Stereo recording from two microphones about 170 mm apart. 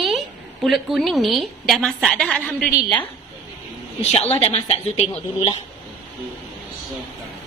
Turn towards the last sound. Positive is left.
turn(degrees=35)  # may be behind; listen again after turning